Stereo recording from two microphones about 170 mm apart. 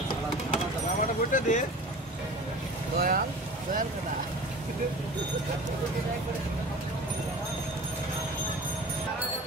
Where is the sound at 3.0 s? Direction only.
55° right (ahead or behind).